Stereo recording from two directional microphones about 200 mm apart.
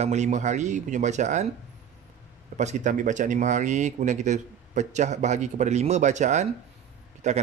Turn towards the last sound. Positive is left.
turn(degrees=-35)  # may be behind; listen again after turning